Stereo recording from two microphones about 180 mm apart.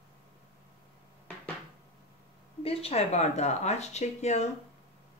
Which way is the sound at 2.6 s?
35° left (ahead or behind).